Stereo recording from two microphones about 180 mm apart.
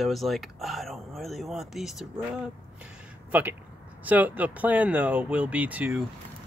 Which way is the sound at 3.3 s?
10° right (ahead or behind).